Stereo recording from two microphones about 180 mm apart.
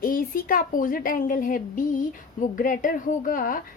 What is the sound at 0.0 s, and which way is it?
Speech, 50° left (ahead or behind).